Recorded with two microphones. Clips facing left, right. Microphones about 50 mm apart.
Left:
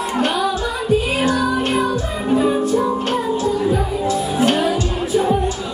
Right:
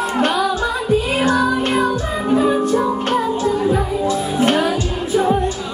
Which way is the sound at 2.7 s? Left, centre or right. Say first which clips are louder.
Right 1 dB; right.